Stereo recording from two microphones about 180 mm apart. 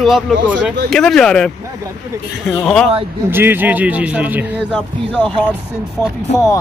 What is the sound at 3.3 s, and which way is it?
A man's voice, 10° right (ahead or behind).